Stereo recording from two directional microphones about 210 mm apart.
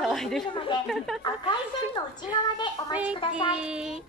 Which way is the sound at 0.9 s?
Centre (ahead or behind).